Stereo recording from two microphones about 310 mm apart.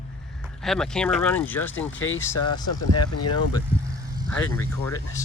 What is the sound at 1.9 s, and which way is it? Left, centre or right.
Speech, left.